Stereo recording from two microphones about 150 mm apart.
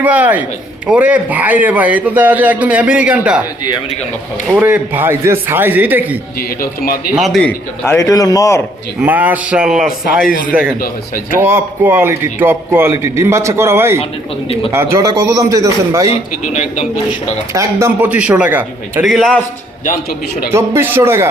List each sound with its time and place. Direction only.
0.0 s a man's voice: 10° right (ahead or behind)
4.4 s a man's voice: 10° right (ahead or behind)
6.6 s a man's voice: 80° left
7.2 s a man's voice: centre (ahead or behind)
7.9 s a man's voice: 20° left (ahead or behind)
9.0 s a man's voice: 10° right (ahead or behind)
10.8 s speech: 70° left (ahead or behind)
11.3 s a man's voice: 15° right (ahead or behind)
16.5 s a man's voice: 55° left (ahead or behind)
17.5 s a man's voice: 20° right (ahead or behind)
19.0 s a man's voice: centre (ahead or behind)
20.5 s a man's voice: 15° right (ahead or behind)